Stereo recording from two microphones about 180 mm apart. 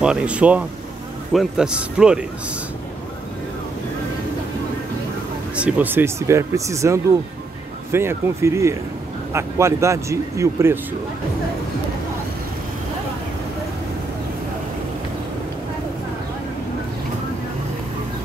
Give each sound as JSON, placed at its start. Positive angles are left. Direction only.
{"t": 0.0, "sound": "a man's voice", "side_deg": -5}
{"t": 5.6, "sound": "speech", "side_deg": -10}